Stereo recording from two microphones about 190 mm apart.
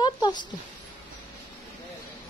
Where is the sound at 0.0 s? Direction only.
20° left (ahead or behind).